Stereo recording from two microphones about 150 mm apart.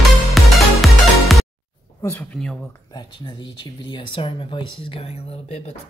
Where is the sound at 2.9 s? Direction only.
30° left (ahead or behind).